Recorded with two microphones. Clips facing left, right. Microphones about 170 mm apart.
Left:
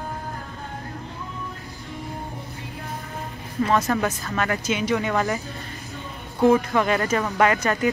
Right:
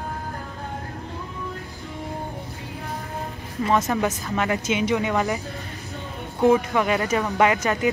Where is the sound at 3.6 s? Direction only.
20° right (ahead or behind).